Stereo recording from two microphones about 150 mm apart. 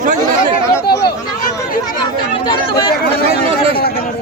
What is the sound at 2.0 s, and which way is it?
Speech, 30° left (ahead or behind).